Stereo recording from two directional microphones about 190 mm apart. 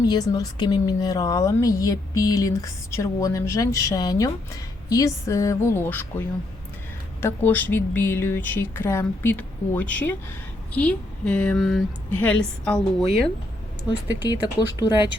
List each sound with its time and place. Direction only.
0.1 s a woman's voice: 20° left (ahead or behind); by 13.1 s 5° left (ahead or behind)
14.4 s speech: 20° left (ahead or behind)